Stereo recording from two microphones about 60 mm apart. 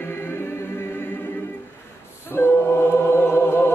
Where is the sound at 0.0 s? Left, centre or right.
Left.